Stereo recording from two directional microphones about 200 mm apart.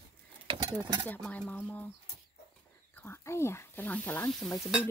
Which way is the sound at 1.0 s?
10° left (ahead or behind).